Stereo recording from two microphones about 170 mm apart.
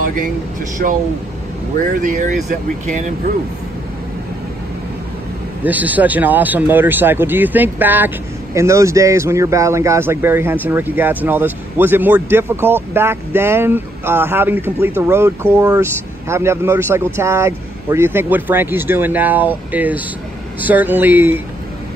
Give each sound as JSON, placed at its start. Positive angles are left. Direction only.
{"t": 0.8, "sound": "speech", "side_deg": -55}
{"t": 5.6, "sound": "speech", "side_deg": -10}